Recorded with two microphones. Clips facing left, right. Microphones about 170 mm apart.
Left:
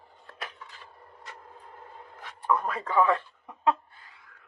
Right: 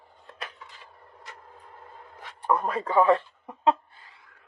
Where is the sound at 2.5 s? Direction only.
30° right (ahead or behind).